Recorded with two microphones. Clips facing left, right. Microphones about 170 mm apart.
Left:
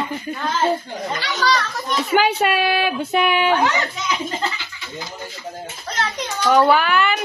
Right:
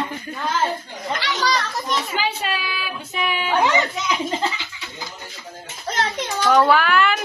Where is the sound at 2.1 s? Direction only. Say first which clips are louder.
Left 8 dB; 60° left (ahead or behind).